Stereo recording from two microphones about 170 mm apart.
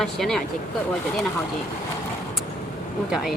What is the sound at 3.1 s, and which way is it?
Speech, centre (ahead or behind).